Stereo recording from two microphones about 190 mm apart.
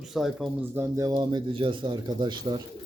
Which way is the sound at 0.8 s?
15° right (ahead or behind).